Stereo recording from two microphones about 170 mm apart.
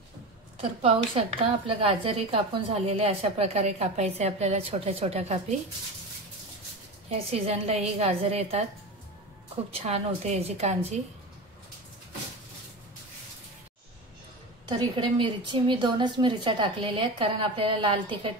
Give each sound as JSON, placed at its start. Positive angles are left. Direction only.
{"t": 0.6, "sound": "a woman's voice", "side_deg": -35}
{"t": 7.1, "sound": "a woman's voice", "side_deg": -35}
{"t": 9.7, "sound": "a woman's voice", "side_deg": -35}
{"t": 14.7, "sound": "a woman's voice", "side_deg": -25}